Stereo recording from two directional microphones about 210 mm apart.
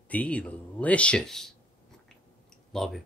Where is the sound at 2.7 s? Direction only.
Centre (ahead or behind).